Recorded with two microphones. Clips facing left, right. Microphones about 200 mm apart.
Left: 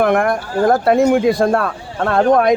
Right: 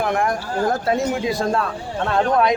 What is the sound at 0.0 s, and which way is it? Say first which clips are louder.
Speech: left 6 dB; 60° left (ahead or behind).